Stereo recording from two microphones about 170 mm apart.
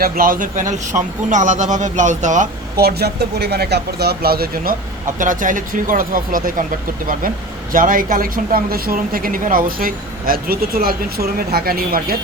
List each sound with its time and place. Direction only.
0.0 s speech: 55° right (ahead or behind)
2.7 s speech: 70° right (ahead or behind)
5.2 s speech: 50° right (ahead or behind)